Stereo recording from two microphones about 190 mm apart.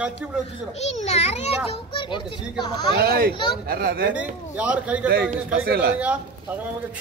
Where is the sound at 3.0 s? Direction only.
55° right (ahead or behind).